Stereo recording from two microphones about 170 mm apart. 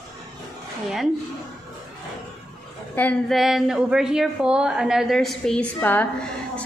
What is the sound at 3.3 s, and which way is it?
A woman's voice, centre (ahead or behind).